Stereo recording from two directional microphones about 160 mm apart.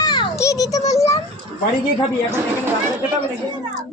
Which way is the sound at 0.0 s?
25° left (ahead or behind).